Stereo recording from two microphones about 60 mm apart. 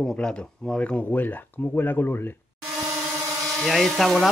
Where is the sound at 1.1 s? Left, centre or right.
Left.